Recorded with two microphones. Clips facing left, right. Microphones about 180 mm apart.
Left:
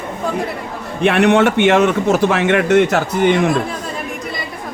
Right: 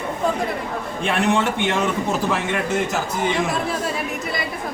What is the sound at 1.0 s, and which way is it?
Speech, 70° left (ahead or behind).